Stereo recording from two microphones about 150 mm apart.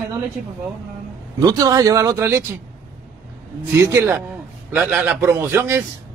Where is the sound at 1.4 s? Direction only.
25° right (ahead or behind).